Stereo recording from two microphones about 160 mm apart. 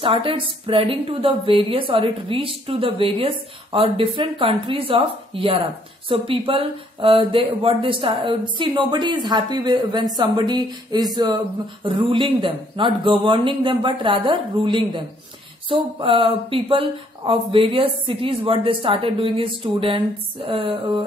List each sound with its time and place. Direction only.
0.0 s speech: 35° right (ahead or behind)